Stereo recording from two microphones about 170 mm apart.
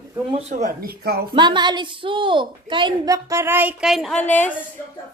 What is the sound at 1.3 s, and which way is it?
A woman's voice, 25° right (ahead or behind).